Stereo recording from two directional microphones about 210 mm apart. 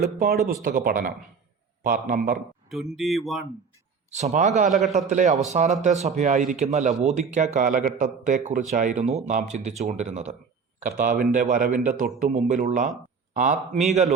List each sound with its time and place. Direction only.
0.0 s speech: 45° right (ahead or behind)
2.6 s speech: centre (ahead or behind)
4.1 s speech: 30° right (ahead or behind)